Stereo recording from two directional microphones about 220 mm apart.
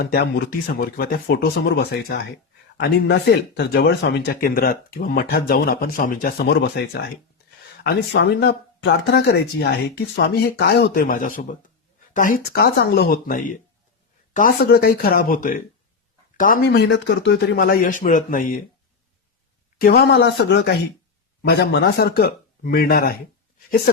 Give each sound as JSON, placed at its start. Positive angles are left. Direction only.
{"t": 0.0, "sound": "a man's voice", "side_deg": 45}
{"t": 19.8, "sound": "speech", "side_deg": 45}